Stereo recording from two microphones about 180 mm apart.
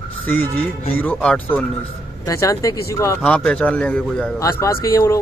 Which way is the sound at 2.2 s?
20° left (ahead or behind).